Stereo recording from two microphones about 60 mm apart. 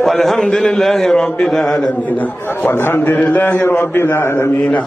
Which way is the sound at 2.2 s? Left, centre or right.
Left.